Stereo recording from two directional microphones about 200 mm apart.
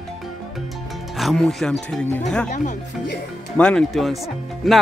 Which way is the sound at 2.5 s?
40° left (ahead or behind).